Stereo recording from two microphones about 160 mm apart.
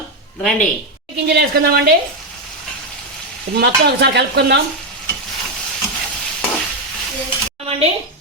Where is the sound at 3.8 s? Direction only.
90° right.